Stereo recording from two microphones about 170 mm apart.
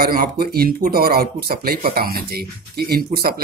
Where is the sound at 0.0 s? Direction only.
60° right (ahead or behind).